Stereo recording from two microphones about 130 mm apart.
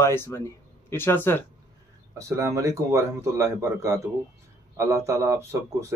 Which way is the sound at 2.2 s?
25° right (ahead or behind).